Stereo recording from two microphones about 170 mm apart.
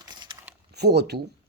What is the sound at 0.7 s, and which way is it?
Speech, 75° right (ahead or behind).